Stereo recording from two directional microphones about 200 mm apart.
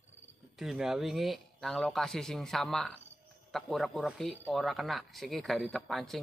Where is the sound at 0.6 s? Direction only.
Centre (ahead or behind).